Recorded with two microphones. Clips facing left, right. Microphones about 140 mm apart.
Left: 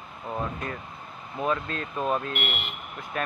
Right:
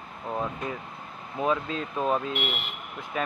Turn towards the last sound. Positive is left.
turn(degrees=0)  # may be behind; listen again after turning